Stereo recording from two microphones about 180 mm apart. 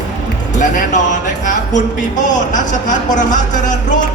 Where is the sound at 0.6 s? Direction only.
45° left (ahead or behind).